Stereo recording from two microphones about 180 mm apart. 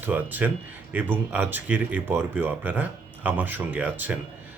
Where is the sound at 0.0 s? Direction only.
10° right (ahead or behind).